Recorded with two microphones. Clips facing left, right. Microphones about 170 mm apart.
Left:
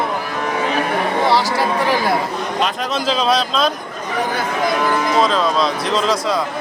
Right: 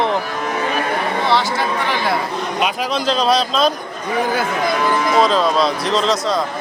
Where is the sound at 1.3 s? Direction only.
35° left (ahead or behind).